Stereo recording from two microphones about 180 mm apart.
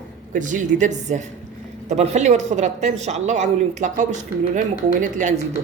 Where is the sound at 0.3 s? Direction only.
45° right (ahead or behind).